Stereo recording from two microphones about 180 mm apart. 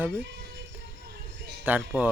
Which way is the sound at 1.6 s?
10° right (ahead or behind).